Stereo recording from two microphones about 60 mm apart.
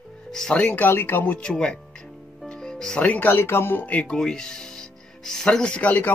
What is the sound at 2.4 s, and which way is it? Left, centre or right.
Music, centre.